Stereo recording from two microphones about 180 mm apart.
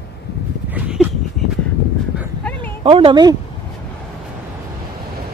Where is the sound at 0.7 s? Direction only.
5° right (ahead or behind).